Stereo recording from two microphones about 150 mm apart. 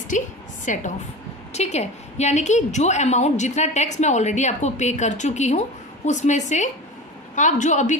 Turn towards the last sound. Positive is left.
turn(degrees=55)  # may be behind; listen again after turning